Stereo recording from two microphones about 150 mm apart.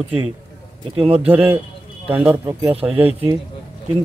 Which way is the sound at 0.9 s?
40° right (ahead or behind).